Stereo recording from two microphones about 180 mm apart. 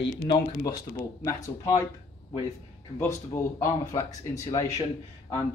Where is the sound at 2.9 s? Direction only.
15° left (ahead or behind).